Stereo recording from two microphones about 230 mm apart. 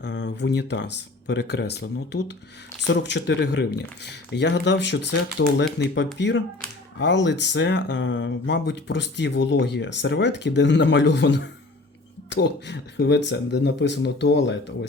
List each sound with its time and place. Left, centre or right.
0.0 s speech: left